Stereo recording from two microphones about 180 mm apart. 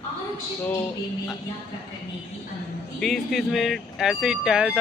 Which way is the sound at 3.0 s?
Centre (ahead or behind).